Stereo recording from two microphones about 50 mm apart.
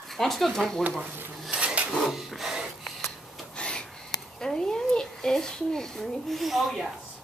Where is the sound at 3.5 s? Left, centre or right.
Centre.